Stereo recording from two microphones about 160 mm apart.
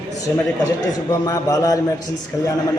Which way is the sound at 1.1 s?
20° left (ahead or behind).